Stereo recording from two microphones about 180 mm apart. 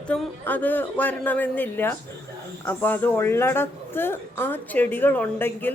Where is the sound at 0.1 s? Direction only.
10° left (ahead or behind).